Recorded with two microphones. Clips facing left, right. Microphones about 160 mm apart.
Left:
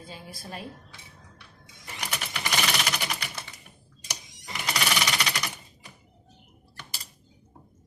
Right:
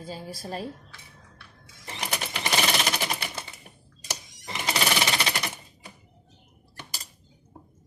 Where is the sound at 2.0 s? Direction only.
35° right (ahead or behind).